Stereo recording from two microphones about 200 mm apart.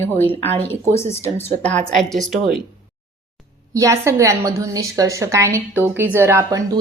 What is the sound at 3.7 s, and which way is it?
A woman's voice, 15° right (ahead or behind).